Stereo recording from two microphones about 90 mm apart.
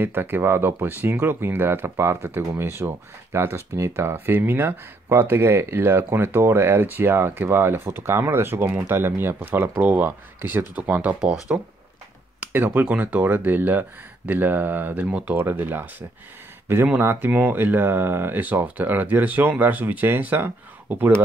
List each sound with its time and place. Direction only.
0.0 s speech: 25° right (ahead or behind)